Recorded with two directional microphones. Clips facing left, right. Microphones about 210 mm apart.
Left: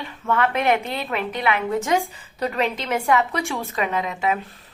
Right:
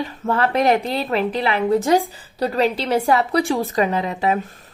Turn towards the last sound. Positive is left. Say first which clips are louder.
# right 3 dB
turn(degrees=-35)  # may be behind; listen again after turning